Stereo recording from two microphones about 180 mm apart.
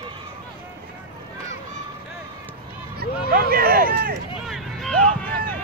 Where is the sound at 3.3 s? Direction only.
55° right (ahead or behind).